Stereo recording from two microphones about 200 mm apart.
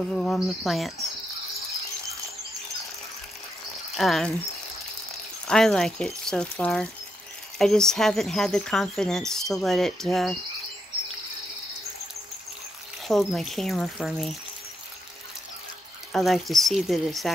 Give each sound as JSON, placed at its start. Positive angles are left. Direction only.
{"t": 0.1, "sound": "speech", "side_deg": 0}
{"t": 3.9, "sound": "speech", "side_deg": 0}
{"t": 5.5, "sound": "speech", "side_deg": 5}
{"t": 13.1, "sound": "speech", "side_deg": 0}
{"t": 16.1, "sound": "speech", "side_deg": 0}